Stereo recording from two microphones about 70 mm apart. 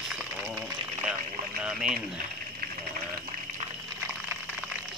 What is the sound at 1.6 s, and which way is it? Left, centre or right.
Speech, centre.